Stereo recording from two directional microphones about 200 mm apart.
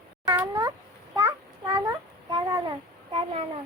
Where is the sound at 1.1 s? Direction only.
15° right (ahead or behind).